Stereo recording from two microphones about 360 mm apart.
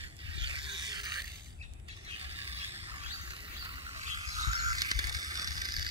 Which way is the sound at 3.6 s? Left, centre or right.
Centre.